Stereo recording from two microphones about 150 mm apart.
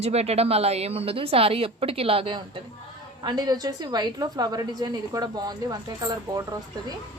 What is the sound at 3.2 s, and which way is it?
A woman's voice, 25° right (ahead or behind).